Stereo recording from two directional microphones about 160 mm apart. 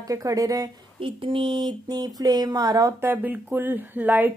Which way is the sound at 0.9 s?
35° right (ahead or behind).